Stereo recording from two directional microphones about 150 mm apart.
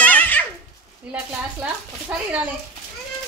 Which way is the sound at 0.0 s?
10° left (ahead or behind).